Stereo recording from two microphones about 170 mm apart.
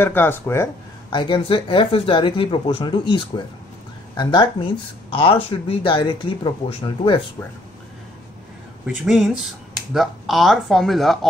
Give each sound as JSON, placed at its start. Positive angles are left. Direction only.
{"t": 0.0, "sound": "speech", "side_deg": 10}
{"t": 1.1, "sound": "speech", "side_deg": 30}
{"t": 8.8, "sound": "speech", "side_deg": 0}